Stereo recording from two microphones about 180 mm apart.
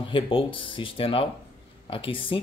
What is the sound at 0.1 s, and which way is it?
Speech, 30° left (ahead or behind).